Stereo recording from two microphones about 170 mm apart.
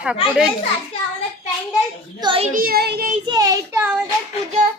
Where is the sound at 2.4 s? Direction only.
55° right (ahead or behind).